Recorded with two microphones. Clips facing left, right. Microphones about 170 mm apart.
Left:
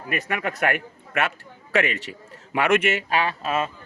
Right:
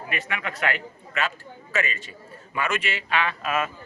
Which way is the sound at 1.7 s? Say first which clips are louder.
Left 6 dB; 70° left (ahead or behind).